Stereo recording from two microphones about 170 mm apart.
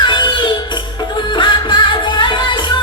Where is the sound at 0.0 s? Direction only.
25° left (ahead or behind).